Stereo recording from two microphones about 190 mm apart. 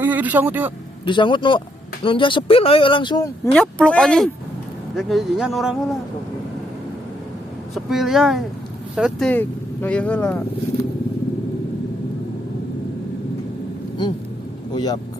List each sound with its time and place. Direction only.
0.0 s speech: 10° right (ahead or behind)
1.0 s speech: 25° left (ahead or behind)
3.5 s speech: 5° left (ahead or behind)
7.9 s speech: centre (ahead or behind)